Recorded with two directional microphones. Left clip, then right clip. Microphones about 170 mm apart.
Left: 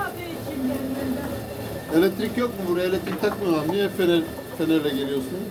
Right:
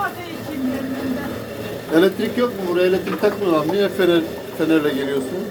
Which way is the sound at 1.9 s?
10° left (ahead or behind).